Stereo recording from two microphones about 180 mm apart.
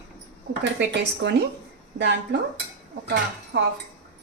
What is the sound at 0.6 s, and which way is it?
A woman's voice, 75° right (ahead or behind).